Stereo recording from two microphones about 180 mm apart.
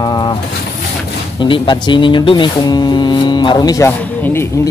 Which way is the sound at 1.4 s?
25° left (ahead or behind).